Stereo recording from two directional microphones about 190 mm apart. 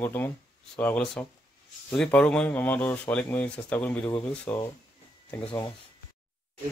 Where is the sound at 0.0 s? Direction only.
10° left (ahead or behind).